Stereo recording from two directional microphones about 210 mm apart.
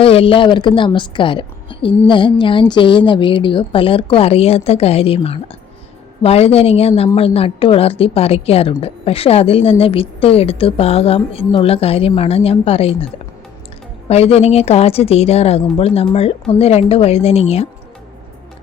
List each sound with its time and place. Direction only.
0.0 s a woman's voice: 25° left (ahead or behind)
14.1 s a woman's voice: 30° left (ahead or behind)